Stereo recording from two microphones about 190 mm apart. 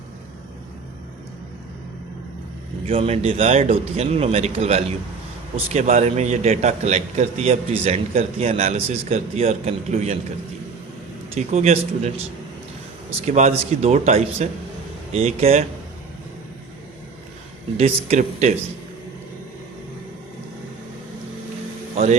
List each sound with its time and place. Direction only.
2.8 s a man's voice: 30° right (ahead or behind)
11.3 s a man's voice: 35° right (ahead or behind)
13.2 s a man's voice: 35° right (ahead or behind)
17.7 s a man's voice: 35° right (ahead or behind)